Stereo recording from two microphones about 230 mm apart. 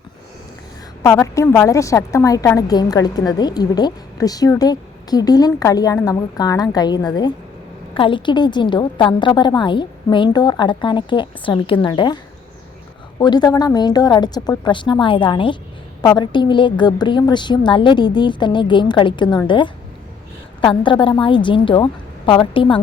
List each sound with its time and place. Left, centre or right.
1.0 s a woman's voice: centre
20.8 s a woman's voice: left